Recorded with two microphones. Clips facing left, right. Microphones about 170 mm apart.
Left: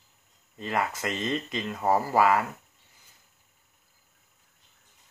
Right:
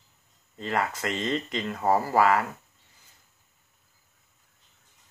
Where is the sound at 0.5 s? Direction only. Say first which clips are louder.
Right 1 dB; 20° left (ahead or behind).